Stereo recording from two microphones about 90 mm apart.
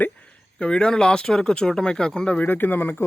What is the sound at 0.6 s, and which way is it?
Speech, 10° left (ahead or behind).